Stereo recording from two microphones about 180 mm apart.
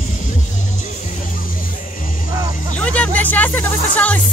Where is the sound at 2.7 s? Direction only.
5° left (ahead or behind).